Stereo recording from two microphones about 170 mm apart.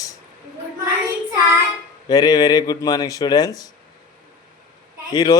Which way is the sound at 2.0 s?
20° left (ahead or behind).